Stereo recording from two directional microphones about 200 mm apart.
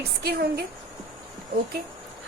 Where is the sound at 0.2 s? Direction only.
50° right (ahead or behind).